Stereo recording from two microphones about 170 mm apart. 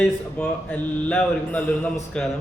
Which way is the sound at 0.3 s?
10° left (ahead or behind).